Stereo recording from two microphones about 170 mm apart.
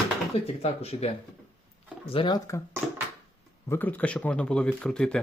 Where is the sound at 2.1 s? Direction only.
25° left (ahead or behind).